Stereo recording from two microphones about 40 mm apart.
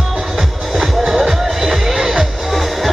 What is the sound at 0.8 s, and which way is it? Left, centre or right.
Music, centre.